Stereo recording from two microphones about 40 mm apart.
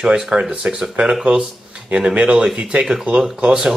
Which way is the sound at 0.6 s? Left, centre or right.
Right.